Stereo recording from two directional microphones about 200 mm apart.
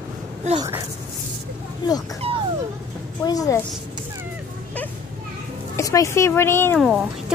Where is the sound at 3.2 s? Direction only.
20° left (ahead or behind).